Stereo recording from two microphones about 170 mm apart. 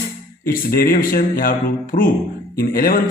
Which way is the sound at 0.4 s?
55° left (ahead or behind).